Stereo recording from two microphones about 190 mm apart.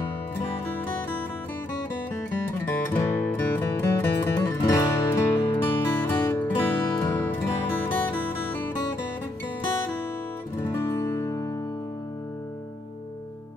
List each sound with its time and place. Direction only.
2.6 s music: 10° left (ahead or behind)
10.6 s music: 15° left (ahead or behind)